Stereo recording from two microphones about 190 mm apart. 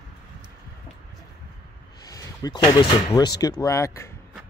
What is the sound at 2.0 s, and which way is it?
Speech, 20° left (ahead or behind).